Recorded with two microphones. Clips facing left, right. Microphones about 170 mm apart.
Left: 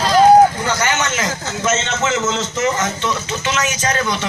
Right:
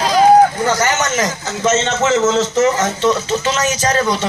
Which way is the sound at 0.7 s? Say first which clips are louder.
Right 3 dB; 40° right (ahead or behind).